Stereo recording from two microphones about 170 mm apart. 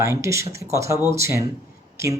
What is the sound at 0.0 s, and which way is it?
Speech, 15° right (ahead or behind).